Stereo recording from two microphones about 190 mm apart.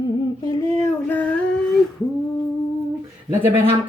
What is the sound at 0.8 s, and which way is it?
Female singing, 10° left (ahead or behind).